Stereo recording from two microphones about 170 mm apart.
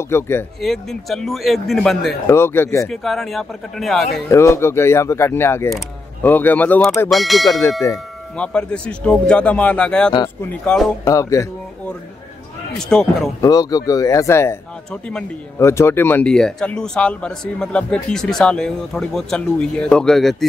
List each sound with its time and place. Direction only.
0.1 s speech: 15° left (ahead or behind)
0.6 s speech: centre (ahead or behind)
2.2 s speech: 15° left (ahead or behind)
2.9 s speech: centre (ahead or behind)
4.3 s speech: 15° left (ahead or behind)
11.1 s speech: 20° left (ahead or behind)
12.7 s speech: 5° left (ahead or behind)
13.4 s speech: 20° left (ahead or behind)
14.9 s speech: 5° left (ahead or behind)
15.6 s speech: 15° left (ahead or behind)